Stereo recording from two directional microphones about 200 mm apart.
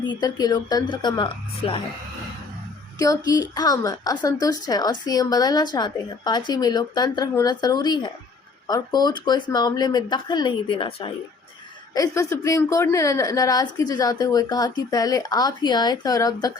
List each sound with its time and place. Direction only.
0.0 s a woman's voice: 20° left (ahead or behind)
3.0 s a woman's voice: 15° left (ahead or behind)